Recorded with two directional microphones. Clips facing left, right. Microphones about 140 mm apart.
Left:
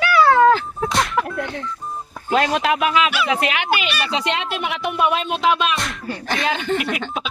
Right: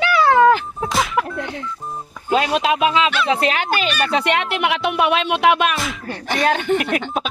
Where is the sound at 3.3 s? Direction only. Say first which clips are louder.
Right 2 dB; 35° right (ahead or behind); by 5.7 s 60° right (ahead or behind).